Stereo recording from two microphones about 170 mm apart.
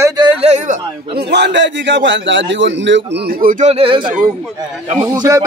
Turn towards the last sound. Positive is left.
turn(degrees=-20)  # may be behind; listen again after turning